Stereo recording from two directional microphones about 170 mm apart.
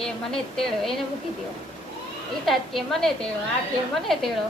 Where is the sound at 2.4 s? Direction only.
Centre (ahead or behind).